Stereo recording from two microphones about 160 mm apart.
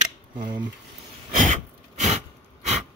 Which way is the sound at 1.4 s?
50° right (ahead or behind).